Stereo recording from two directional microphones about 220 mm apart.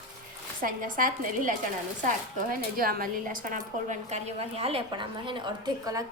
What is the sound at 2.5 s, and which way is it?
A woman's voice, 40° right (ahead or behind).